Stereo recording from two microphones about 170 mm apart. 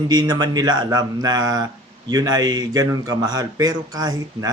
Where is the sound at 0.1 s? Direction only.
25° right (ahead or behind).